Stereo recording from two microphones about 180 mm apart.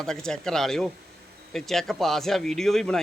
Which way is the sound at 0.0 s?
5° left (ahead or behind).